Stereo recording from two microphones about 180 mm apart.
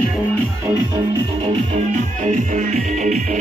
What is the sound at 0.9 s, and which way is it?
Music, 25° right (ahead or behind).